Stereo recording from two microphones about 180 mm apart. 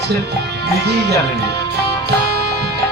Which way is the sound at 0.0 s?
65° right (ahead or behind).